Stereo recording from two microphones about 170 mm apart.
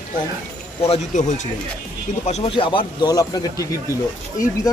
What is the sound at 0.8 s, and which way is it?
Speech, 35° left (ahead or behind).